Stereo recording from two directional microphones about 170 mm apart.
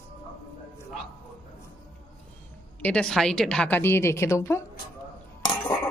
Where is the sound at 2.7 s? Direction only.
5° left (ahead or behind).